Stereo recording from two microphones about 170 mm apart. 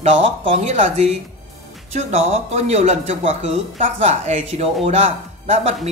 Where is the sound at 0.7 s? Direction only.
40° right (ahead or behind).